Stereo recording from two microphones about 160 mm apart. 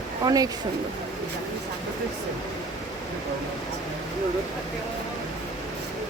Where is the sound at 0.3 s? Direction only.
25° right (ahead or behind).